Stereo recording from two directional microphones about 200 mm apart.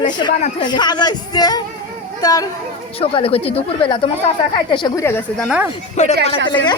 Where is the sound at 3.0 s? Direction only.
30° left (ahead or behind); by 5.4 s 10° left (ahead or behind).